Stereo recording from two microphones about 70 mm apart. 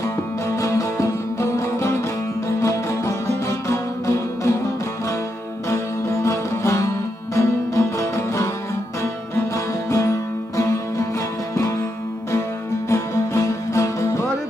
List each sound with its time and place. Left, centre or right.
0.5 s music: left
5.6 s music: left
9.9 s music: left
12.9 s music: left